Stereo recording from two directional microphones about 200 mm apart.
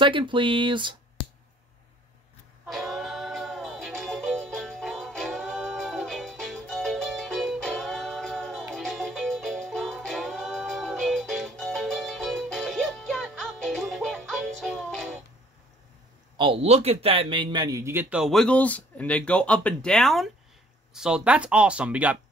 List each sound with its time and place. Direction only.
0.0 s speech: 25° right (ahead or behind)
2.6 s music: centre (ahead or behind)
16.3 s speech: 30° right (ahead or behind); by 22.2 s 5° right (ahead or behind)